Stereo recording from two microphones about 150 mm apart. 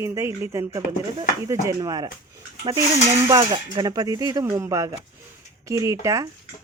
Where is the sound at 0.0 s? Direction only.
20° right (ahead or behind).